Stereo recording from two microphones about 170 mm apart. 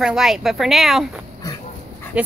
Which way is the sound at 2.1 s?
5° right (ahead or behind).